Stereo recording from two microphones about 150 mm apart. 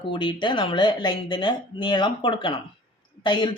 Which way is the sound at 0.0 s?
35° left (ahead or behind).